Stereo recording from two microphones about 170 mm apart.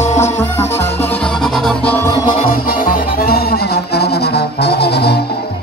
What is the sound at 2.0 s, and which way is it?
Music, 20° left (ahead or behind).